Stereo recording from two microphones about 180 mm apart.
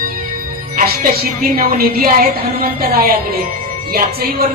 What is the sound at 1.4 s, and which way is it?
A woman's voice, 55° right (ahead or behind).